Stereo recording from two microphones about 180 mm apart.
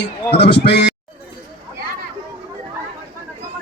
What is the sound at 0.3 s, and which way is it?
Speech, 65° left (ahead or behind).